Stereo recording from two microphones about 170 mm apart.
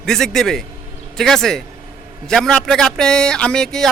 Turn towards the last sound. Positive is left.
turn(degrees=5)  # may be behind; listen again after turning